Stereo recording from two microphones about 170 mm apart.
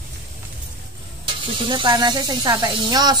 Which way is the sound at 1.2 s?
30° right (ahead or behind).